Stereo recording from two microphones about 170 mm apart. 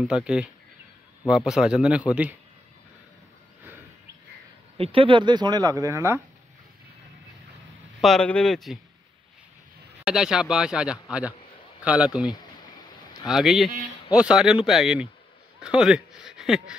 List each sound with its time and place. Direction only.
0.0 s speech: 5° right (ahead or behind)
4.7 s speech: 35° right (ahead or behind); by 6.2 s 15° right (ahead or behind)
8.0 s speech: 5° left (ahead or behind)
10.0 s speech: 5° right (ahead or behind)